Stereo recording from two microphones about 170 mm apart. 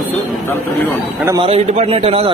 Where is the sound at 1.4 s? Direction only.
35° right (ahead or behind).